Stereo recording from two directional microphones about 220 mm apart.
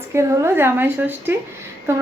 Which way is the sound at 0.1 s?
10° right (ahead or behind).